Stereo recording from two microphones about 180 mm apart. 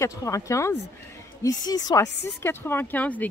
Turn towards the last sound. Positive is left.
turn(degrees=10)  # may be behind; listen again after turning